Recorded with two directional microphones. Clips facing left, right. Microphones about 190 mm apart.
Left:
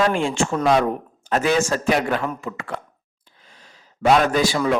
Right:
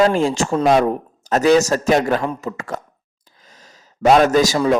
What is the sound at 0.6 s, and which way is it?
Speech, 25° right (ahead or behind).